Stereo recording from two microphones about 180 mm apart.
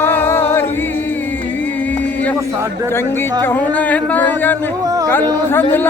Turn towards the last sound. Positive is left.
turn(degrees=10)  # may be behind; listen again after turning